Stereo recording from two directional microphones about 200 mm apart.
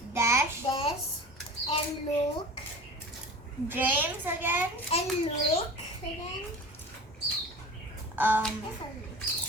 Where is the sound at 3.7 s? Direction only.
10° right (ahead or behind).